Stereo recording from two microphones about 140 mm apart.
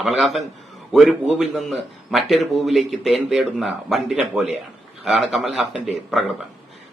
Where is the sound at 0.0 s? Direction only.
Centre (ahead or behind).